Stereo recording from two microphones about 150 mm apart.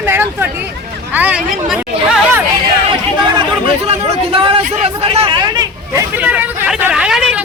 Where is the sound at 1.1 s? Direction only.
10° right (ahead or behind).